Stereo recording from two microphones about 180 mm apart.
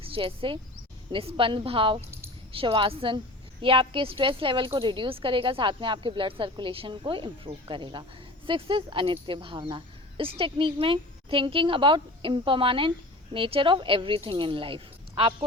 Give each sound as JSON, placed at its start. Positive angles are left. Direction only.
{"t": 0.0, "sound": "a woman's voice", "side_deg": -30}
{"t": 2.0, "sound": "keys jangling", "side_deg": -15}
{"t": 2.5, "sound": "a woman's voice", "side_deg": -30}